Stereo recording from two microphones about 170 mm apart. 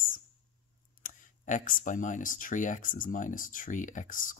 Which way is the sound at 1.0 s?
45° left (ahead or behind).